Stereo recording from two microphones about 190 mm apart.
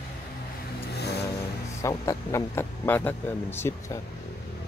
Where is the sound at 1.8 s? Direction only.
15° left (ahead or behind).